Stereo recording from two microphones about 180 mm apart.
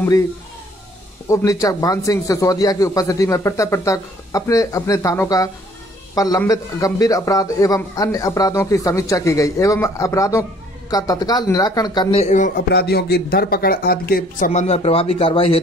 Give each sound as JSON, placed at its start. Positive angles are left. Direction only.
{"t": 1.3, "sound": "a man's voice", "side_deg": 20}
{"t": 12.2, "sound": "a man's voice", "side_deg": 45}
{"t": 12.7, "sound": "speech", "side_deg": 65}
{"t": 14.5, "sound": "speech", "side_deg": 35}